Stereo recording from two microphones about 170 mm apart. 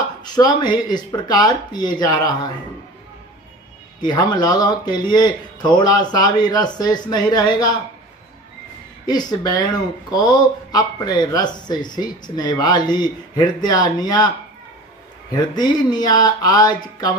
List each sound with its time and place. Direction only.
0.2 s speech: 25° left (ahead or behind)
4.0 s speech: 25° left (ahead or behind)
9.0 s speech: 25° left (ahead or behind)